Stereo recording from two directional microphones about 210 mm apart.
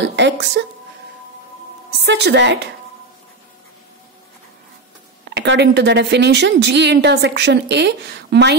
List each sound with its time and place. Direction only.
0.0 s a sound: 55° right (ahead or behind)
2.0 s a woman's voice: 55° right (ahead or behind)
5.3 s a woman's voice: 55° right (ahead or behind)